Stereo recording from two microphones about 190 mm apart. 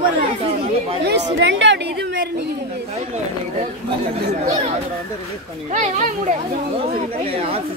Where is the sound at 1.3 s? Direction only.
70° right (ahead or behind).